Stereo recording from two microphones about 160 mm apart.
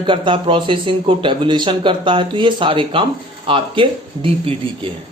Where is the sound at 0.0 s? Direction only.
30° right (ahead or behind).